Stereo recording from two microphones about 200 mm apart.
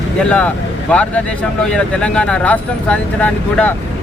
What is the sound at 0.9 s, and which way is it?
Speech, 5° left (ahead or behind).